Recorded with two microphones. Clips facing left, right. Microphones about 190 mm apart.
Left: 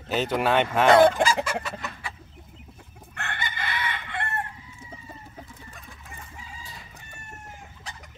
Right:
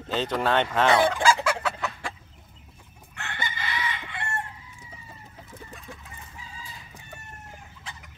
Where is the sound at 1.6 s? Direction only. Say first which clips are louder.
Right 2 dB; 75° right (ahead or behind).